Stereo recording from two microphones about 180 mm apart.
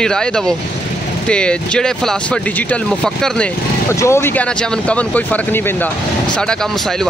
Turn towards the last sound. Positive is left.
turn(degrees=10)  # may be behind; listen again after turning